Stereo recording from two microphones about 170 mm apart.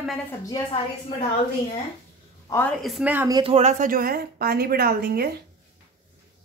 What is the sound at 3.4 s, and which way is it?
A woman's voice, 40° right (ahead or behind).